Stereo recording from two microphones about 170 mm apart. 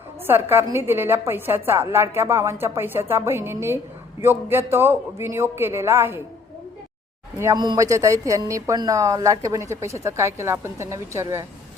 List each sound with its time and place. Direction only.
0.3 s speech: 15° right (ahead or behind)
7.3 s speech: 20° right (ahead or behind)